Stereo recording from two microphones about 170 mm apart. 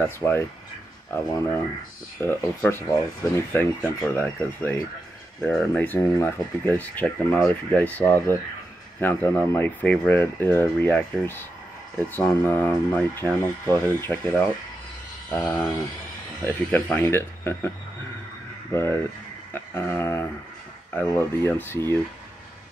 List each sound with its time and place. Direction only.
0.0 s speech: 15° left (ahead or behind)
18.7 s speech: 15° left (ahead or behind)
19.5 s a sound: 10° left (ahead or behind)
20.9 s speech: 10° left (ahead or behind)